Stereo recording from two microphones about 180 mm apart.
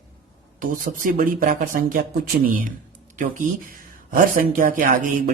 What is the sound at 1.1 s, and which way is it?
Speech, 50° right (ahead or behind).